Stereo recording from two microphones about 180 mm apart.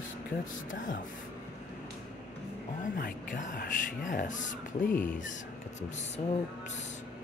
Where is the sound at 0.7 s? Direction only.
50° left (ahead or behind).